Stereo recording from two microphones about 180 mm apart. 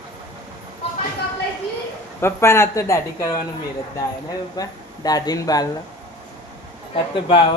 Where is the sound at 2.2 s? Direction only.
15° left (ahead or behind).